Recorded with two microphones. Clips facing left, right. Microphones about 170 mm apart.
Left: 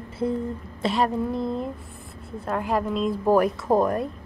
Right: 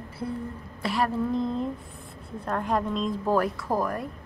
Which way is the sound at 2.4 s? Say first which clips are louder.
Left 2 dB; 5° left (ahead or behind).